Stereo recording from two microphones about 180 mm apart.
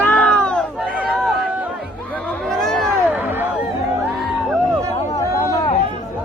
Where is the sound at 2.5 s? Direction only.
Centre (ahead or behind).